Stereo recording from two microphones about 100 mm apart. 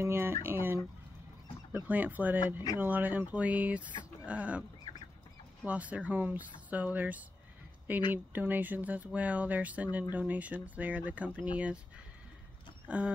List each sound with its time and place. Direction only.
0.0 s speech: 25° right (ahead or behind)
2.4 s speech: 40° left (ahead or behind)
2.8 s speech: 15° right (ahead or behind)
5.7 s speech: 15° right (ahead or behind)
12.8 s speech: 15° right (ahead or behind)